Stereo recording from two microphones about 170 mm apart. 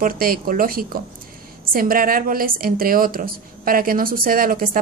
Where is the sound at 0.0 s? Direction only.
60° right (ahead or behind).